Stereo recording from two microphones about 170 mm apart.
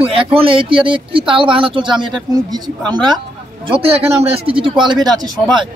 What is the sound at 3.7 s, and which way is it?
Speech, 35° right (ahead or behind).